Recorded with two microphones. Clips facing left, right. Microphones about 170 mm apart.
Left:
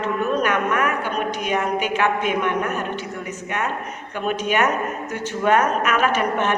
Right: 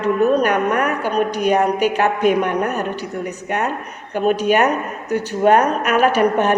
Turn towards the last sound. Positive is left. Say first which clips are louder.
# right 5 dB
turn(degrees=-40)  # may be behind; listen again after turning